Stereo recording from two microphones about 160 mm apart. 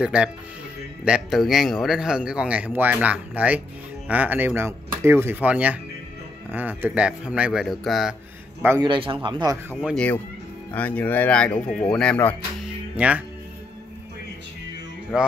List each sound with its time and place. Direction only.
0.0 s speech: 5° right (ahead or behind)
8.8 s speech: 30° right (ahead or behind)
9.8 s speech: 5° left (ahead or behind)
12.9 s speech: 10° right (ahead or behind)
15.1 s speech: 5° right (ahead or behind)